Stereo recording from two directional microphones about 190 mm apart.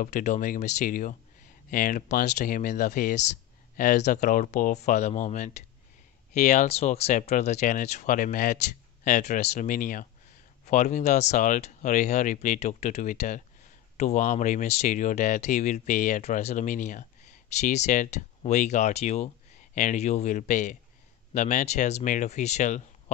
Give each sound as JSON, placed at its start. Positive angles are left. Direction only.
{"t": 0.0, "sound": "speech", "side_deg": 40}